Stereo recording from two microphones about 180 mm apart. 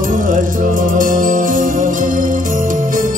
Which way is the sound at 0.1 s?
45° right (ahead or behind).